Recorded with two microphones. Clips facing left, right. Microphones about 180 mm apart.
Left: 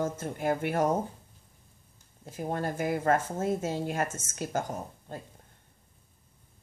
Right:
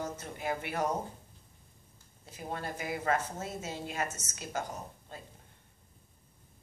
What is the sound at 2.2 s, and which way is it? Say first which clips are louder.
Speech: left 7 dB; 50° left (ahead or behind).